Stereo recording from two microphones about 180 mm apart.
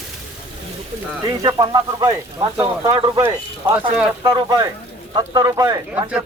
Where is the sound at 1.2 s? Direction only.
25° right (ahead or behind).